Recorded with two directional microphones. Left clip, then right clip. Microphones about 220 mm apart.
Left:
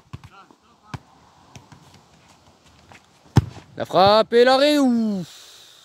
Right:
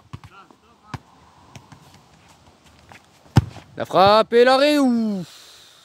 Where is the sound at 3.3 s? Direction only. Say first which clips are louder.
Right 1 dB; 20° right (ahead or behind).